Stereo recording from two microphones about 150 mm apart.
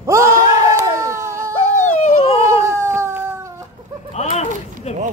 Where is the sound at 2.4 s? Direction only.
20° right (ahead or behind).